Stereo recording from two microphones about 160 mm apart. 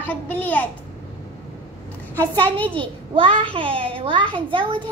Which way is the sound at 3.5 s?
35° right (ahead or behind).